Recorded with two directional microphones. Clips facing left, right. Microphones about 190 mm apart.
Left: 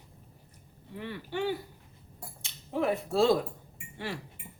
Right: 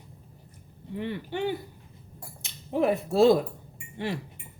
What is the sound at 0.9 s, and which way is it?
Speech, 20° right (ahead or behind).